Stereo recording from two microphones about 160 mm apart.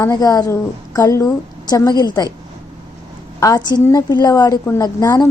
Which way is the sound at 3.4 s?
20° left (ahead or behind).